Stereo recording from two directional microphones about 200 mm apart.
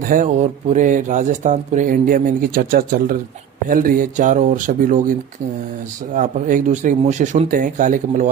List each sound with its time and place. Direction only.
0.0 s speech: 40° right (ahead or behind)
6.1 s speech: 40° right (ahead or behind)